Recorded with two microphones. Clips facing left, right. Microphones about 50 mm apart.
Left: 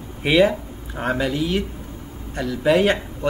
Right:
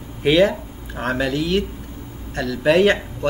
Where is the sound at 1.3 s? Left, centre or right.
Right.